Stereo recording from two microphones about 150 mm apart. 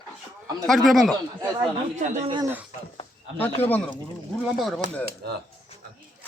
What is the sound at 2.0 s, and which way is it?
Speech, 50° right (ahead or behind).